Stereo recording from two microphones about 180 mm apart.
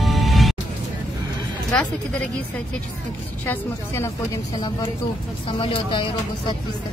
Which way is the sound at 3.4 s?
15° left (ahead or behind).